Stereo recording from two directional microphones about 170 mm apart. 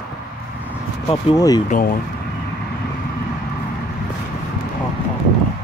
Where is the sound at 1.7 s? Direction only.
55° left (ahead or behind).